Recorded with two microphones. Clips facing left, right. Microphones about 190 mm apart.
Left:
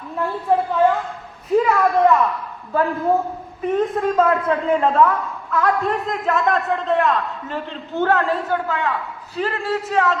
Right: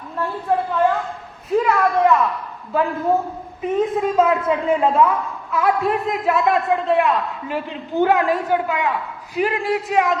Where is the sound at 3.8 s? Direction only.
5° right (ahead or behind).